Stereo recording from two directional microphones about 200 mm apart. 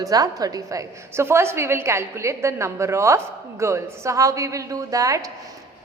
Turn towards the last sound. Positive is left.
turn(degrees=-15)  # may be behind; listen again after turning